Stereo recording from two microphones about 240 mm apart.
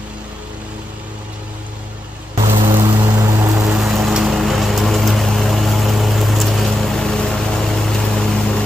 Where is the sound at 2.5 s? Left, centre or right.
Right.